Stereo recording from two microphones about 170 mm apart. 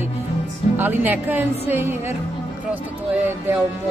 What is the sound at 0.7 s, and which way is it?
Speech, 10° right (ahead or behind).